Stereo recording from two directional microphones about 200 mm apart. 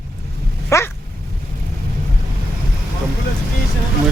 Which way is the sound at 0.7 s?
15° left (ahead or behind).